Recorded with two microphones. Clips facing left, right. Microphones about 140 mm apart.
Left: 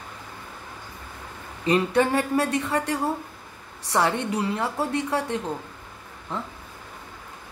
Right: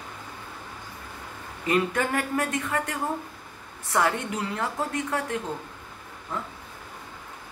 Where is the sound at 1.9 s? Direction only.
30° left (ahead or behind).